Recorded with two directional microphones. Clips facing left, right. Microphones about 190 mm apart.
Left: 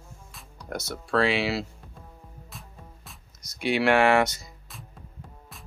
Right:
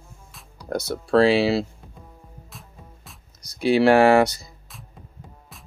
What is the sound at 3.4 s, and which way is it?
Speech, 35° right (ahead or behind).